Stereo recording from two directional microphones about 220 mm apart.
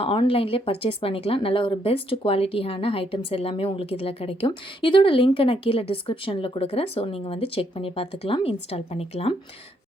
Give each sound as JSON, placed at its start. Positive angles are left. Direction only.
{"t": 0.0, "sound": "speech", "side_deg": 25}